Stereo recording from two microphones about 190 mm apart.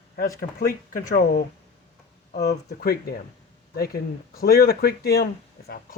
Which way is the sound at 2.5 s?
55° left (ahead or behind).